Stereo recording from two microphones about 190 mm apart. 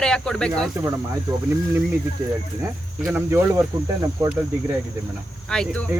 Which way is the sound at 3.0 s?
10° right (ahead or behind).